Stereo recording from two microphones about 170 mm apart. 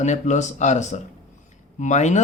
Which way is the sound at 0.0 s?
45° left (ahead or behind).